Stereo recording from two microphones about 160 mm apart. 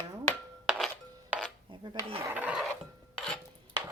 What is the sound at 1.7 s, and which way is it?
Filing, 30° right (ahead or behind).